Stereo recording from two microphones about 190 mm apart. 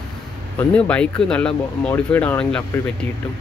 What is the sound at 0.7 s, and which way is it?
Speech, 5° left (ahead or behind).